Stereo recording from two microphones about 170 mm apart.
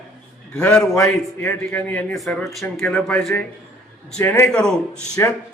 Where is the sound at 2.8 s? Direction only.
15° left (ahead or behind).